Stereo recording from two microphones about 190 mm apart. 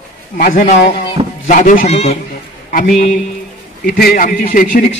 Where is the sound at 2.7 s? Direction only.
50° left (ahead or behind).